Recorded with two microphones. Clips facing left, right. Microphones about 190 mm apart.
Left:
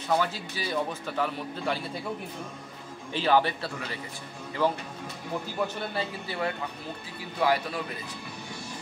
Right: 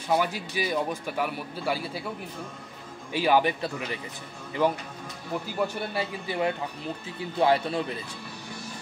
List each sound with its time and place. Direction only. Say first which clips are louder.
0.1 s a man's voice: right 2 dB; 15° right (ahead or behind)
3.1 s a man's voice: right 1 dB; 10° right (ahead or behind)
5.9 s a man's voice: right 4 dB; 20° right (ahead or behind)